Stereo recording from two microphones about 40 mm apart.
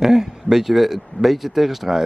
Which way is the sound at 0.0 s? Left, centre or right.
Centre.